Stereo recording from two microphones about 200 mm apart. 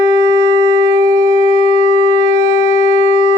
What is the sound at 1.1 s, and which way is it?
Shofar, 40° left (ahead or behind).